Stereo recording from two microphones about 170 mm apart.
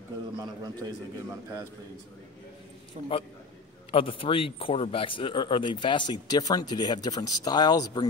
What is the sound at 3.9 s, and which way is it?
Speech, 30° left (ahead or behind).